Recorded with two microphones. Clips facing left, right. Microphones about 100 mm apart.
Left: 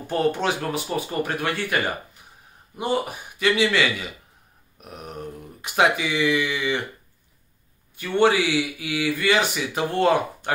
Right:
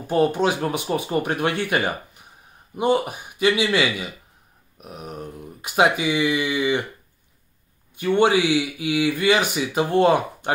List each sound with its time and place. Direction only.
0.1 s speech: 15° right (ahead or behind)
5.9 s speech: 15° right (ahead or behind)
7.9 s speech: 15° right (ahead or behind)